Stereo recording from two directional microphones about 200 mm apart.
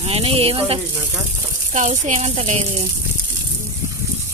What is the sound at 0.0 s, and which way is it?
Speech, 30° right (ahead or behind).